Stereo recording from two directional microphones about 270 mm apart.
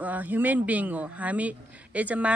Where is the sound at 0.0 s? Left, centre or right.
Centre.